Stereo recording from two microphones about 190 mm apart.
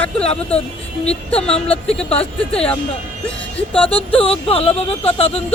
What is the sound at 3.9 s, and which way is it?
Speech, 30° left (ahead or behind).